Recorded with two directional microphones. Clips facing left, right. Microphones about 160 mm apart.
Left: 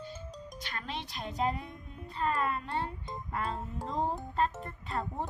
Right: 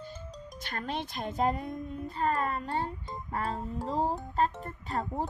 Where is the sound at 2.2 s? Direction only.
40° right (ahead or behind).